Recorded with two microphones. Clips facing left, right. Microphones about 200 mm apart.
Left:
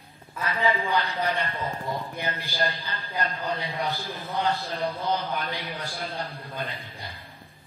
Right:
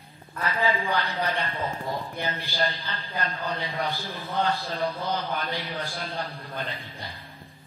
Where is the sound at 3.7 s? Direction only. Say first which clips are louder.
Even; 15° left (ahead or behind).